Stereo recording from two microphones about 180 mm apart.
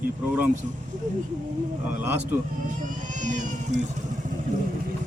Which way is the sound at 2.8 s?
45° right (ahead or behind).